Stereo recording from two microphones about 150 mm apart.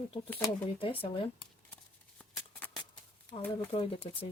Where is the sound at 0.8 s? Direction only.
35° left (ahead or behind).